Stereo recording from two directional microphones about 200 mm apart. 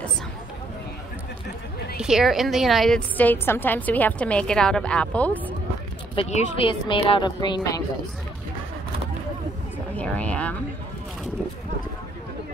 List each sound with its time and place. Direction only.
2.0 s a woman's voice: 5° right (ahead or behind)
6.1 s a woman's voice: 30° left (ahead or behind)
9.9 s a sound: 5° left (ahead or behind)